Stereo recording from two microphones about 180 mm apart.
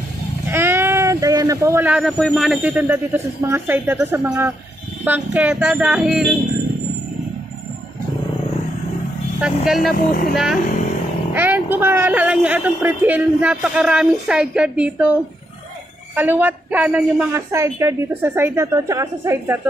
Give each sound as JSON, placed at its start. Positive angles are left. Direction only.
{"t": 0.5, "sound": "speech", "side_deg": -15}
{"t": 9.8, "sound": "speech", "side_deg": 50}
{"t": 10.3, "sound": "speech", "side_deg": 0}
{"t": 16.2, "sound": "speech", "side_deg": -10}